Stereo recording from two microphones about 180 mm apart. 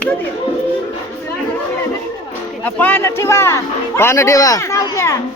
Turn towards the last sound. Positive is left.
turn(degrees=15)  # may be behind; listen again after turning